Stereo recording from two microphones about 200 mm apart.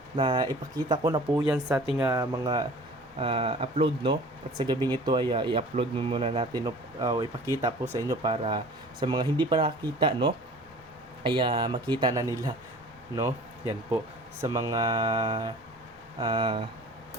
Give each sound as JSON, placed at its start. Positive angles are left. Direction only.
{"t": 0.2, "sound": "speech", "side_deg": -25}
{"t": 14.4, "sound": "speech", "side_deg": -15}